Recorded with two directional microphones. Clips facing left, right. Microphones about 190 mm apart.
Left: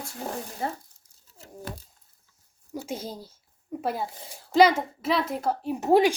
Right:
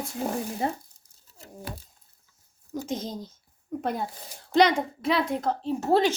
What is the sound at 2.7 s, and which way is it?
A woman's voice, 10° left (ahead or behind).